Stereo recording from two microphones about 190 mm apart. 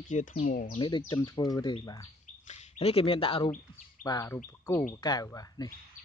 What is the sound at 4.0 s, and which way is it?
Speech, 15° left (ahead or behind).